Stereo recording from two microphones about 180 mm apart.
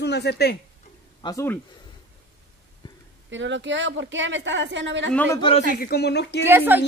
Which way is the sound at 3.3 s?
90° right.